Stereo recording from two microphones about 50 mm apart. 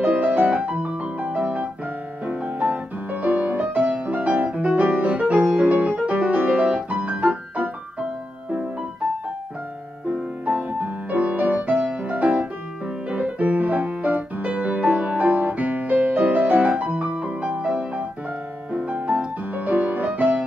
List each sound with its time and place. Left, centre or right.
0.0 s music: right
5.3 s piano: right
10.1 s music: right